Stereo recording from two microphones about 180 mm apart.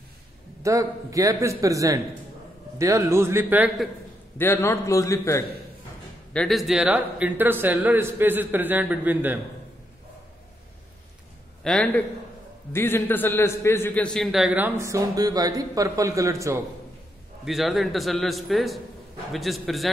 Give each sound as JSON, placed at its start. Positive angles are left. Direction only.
{"t": 0.6, "sound": "a man's voice", "side_deg": -20}
{"t": 4.4, "sound": "a man's voice", "side_deg": 15}
{"t": 6.3, "sound": "a man's voice", "side_deg": 0}
{"t": 11.6, "sound": "a man's voice", "side_deg": 5}
{"t": 17.5, "sound": "a man's voice", "side_deg": 0}